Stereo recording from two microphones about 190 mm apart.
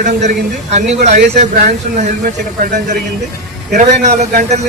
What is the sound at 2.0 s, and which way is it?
Speech, 45° right (ahead or behind).